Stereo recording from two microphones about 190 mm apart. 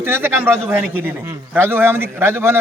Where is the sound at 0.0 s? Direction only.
10° right (ahead or behind).